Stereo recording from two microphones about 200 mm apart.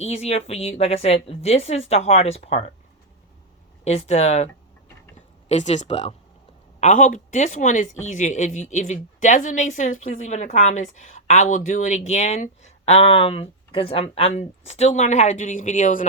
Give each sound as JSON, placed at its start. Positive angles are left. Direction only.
{"t": 0.0, "sound": "a woman's voice", "side_deg": 30}
{"t": 3.8, "sound": "a woman's voice", "side_deg": 35}
{"t": 5.5, "sound": "a woman's voice", "side_deg": 35}